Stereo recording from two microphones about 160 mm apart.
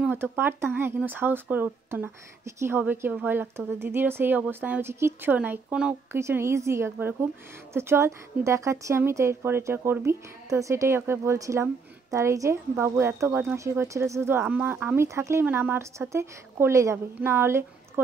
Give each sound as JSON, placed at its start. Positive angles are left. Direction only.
{"t": 0.0, "sound": "a woman's voice", "side_deg": -15}
{"t": 6.1, "sound": "a woman's voice", "side_deg": -15}